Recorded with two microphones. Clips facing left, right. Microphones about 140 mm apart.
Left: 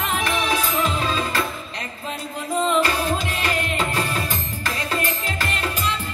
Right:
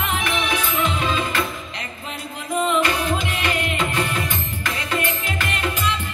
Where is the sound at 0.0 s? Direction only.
35° left (ahead or behind).